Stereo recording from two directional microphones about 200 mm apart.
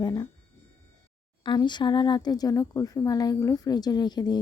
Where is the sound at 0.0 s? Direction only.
20° left (ahead or behind).